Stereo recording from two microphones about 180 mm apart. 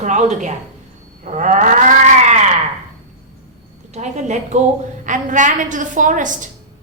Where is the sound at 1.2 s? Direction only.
45° right (ahead or behind).